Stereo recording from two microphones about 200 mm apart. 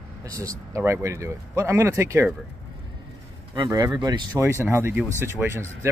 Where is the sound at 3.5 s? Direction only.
20° right (ahead or behind).